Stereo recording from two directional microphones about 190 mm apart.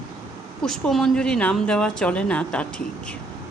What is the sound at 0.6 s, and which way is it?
A woman's voice, centre (ahead or behind).